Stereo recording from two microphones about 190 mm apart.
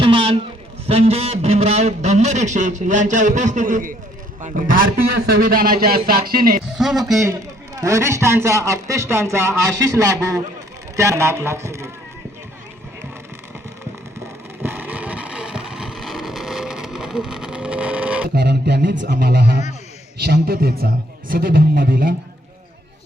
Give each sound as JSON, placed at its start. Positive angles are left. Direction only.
{"t": 0.0, "sound": "a sound", "side_deg": -25}
{"t": 0.9, "sound": "a man's voice", "side_deg": -30}
{"t": 6.7, "sound": "speech", "side_deg": 0}
{"t": 7.8, "sound": "speech", "side_deg": -15}
{"t": 14.6, "sound": "vehicle", "side_deg": -10}
{"t": 18.3, "sound": "a man's voice", "side_deg": -60}